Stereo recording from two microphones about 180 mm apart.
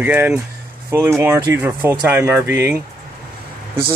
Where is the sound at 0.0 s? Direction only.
10° right (ahead or behind).